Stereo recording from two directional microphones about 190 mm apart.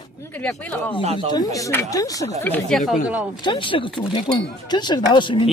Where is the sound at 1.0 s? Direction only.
35° right (ahead or behind).